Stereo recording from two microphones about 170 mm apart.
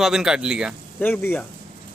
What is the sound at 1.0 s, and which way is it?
Speech, 10° left (ahead or behind).